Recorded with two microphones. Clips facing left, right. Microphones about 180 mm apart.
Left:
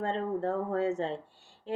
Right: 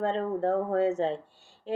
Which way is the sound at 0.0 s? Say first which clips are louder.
Right 3 dB; 65° right (ahead or behind).